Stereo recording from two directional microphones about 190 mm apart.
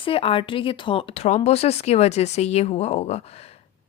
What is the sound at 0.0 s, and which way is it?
A woman's voice, 30° left (ahead or behind).